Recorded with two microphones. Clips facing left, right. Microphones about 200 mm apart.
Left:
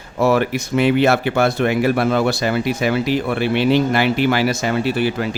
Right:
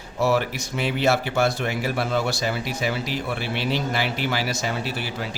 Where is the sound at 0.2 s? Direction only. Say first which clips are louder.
Left 6 dB; 55° left (ahead or behind).